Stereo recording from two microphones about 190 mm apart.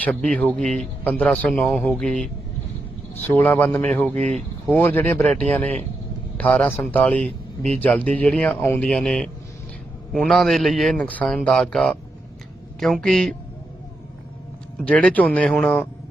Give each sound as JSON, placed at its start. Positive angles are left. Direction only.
{"t": 0.0, "sound": "speech", "side_deg": 5}
{"t": 4.2, "sound": "speech", "side_deg": -35}
{"t": 4.6, "sound": "speech", "side_deg": 10}
{"t": 14.8, "sound": "speech", "side_deg": 5}